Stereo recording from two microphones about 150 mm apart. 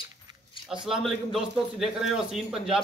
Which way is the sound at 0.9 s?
Centre (ahead or behind).